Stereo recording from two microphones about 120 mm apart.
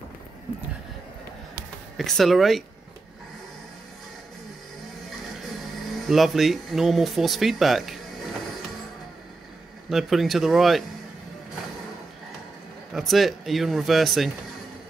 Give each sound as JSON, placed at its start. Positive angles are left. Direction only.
{"t": 2.0, "sound": "speech", "side_deg": 0}
{"t": 5.9, "sound": "speech", "side_deg": 0}
{"t": 9.8, "sound": "speech", "side_deg": 0}
{"t": 12.9, "sound": "speech", "side_deg": 0}